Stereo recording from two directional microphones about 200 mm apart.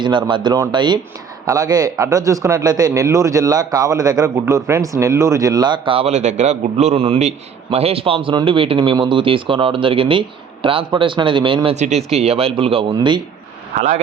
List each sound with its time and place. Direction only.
0.0 s a man's voice: 25° right (ahead or behind)